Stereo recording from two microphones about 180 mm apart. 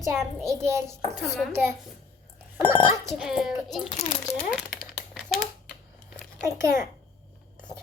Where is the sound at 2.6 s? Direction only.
15° right (ahead or behind).